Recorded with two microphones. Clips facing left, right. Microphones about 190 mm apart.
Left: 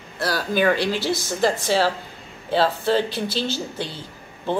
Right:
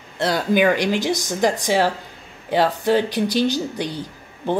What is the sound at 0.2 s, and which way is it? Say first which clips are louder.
A woman's voice: right 4 dB; 20° right (ahead or behind).